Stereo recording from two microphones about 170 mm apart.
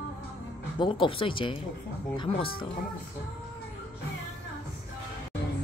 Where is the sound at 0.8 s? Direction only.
30° left (ahead or behind).